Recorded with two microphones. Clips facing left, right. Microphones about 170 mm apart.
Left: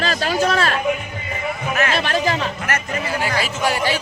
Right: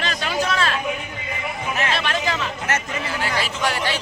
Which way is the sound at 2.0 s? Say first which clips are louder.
Left 4 dB; 35° left (ahead or behind).